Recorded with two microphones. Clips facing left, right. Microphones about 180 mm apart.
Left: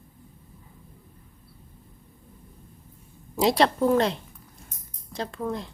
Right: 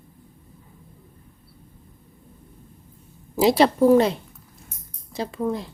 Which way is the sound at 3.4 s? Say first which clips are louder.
Right 4 dB; 5° right (ahead or behind).